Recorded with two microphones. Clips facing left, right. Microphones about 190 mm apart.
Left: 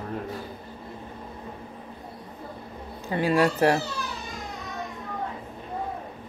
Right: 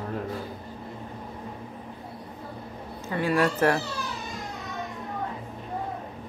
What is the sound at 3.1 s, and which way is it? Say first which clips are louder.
Speech: left 2 dB; 20° left (ahead or behind).